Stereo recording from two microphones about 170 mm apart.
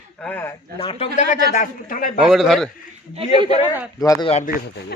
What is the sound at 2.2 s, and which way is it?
Speech, centre (ahead or behind).